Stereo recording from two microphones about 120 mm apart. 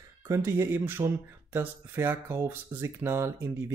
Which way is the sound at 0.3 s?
25° right (ahead or behind).